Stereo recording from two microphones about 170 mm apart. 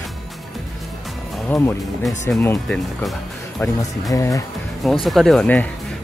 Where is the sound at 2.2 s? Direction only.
15° left (ahead or behind).